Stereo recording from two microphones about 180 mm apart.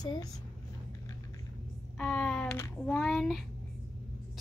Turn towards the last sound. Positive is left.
turn(degrees=0)  # may be behind; listen again after turning